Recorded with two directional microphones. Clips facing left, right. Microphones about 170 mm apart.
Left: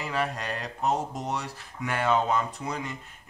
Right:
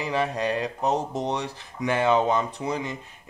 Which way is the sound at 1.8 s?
20° right (ahead or behind).